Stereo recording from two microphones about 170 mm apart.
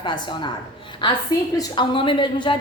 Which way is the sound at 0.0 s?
25° left (ahead or behind).